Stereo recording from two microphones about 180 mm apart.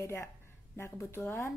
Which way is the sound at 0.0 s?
15° left (ahead or behind).